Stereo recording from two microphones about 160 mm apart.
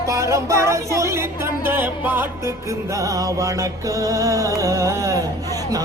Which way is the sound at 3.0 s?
20° right (ahead or behind).